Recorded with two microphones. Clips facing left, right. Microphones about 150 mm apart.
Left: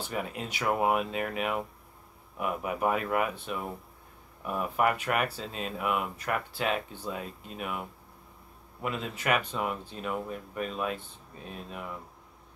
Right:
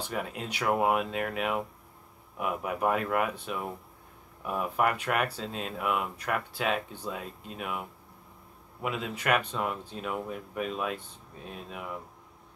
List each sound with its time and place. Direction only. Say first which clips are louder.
0.0 s speech: even; centre (ahead or behind)